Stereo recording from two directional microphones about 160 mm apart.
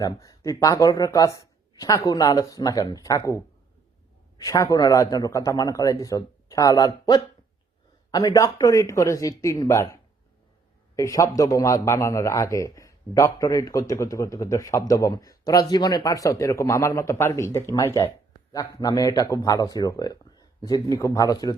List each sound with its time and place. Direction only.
0.0 s a man's voice: 20° left (ahead or behind)
4.4 s a man's voice: 20° left (ahead or behind)